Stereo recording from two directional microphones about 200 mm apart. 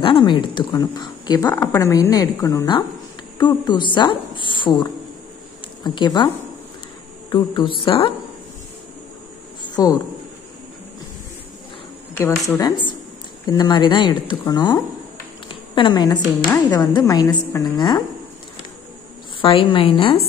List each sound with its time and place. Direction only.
0.0 s a woman's voice: 25° left (ahead or behind)
5.9 s speech: 20° left (ahead or behind)
9.8 s speech: 20° left (ahead or behind)
12.1 s a woman's voice: 10° left (ahead or behind)
15.4 s a sound: 25° left (ahead or behind)
16.7 s a woman's voice: 20° left (ahead or behind)
17.7 s speech: 20° left (ahead or behind)
19.4 s speech: 25° left (ahead or behind)